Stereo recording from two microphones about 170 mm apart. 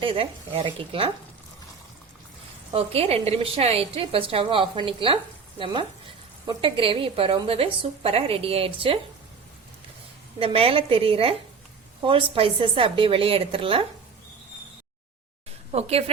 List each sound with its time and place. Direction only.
0.0 s a woman's voice: 35° right (ahead or behind)
2.7 s a woman's voice: 35° right (ahead or behind)
10.4 s a woman's voice: 35° right (ahead or behind)
15.7 s a woman's voice: 35° right (ahead or behind)